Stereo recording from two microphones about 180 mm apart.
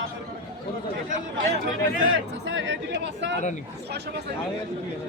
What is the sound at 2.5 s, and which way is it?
Speech, 90° right.